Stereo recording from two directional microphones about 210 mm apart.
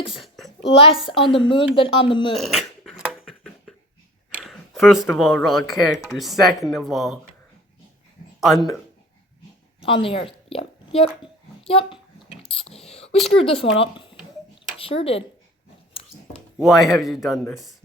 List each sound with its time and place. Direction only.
0.1 s a sound: centre (ahead or behind)
1.3 s speech: 25° left (ahead or behind)
2.3 s dog: centre (ahead or behind)
4.4 s speech: centre (ahead or behind)
8.4 s speech: centre (ahead or behind)
9.8 s a woman's voice: 25° left (ahead or behind)
11.7 s a sound: 25° left (ahead or behind)
13.4 s speech: 25° left (ahead or behind)
16.6 s speech: centre (ahead or behind)